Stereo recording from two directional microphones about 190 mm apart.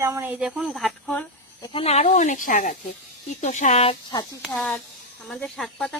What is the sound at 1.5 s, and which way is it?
Speech, 20° left (ahead or behind).